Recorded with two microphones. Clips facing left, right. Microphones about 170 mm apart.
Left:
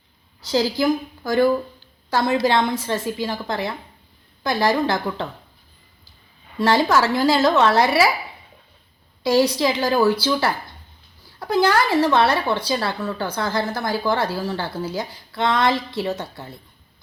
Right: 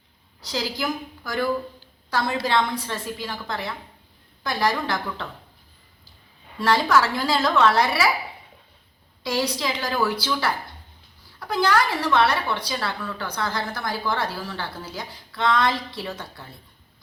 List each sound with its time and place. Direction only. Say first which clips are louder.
0.4 s a woman's voice: left 8 dB; 25° left (ahead or behind)
6.6 s a woman's voice: left 3 dB; 25° left (ahead or behind)
9.2 s a woman's voice: left 8 dB; 25° left (ahead or behind)